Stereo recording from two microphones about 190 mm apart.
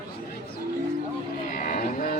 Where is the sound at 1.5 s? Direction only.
45° left (ahead or behind).